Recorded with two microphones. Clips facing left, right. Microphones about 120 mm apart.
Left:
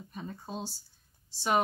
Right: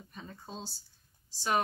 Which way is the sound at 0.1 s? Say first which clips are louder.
Left 5 dB; 15° left (ahead or behind).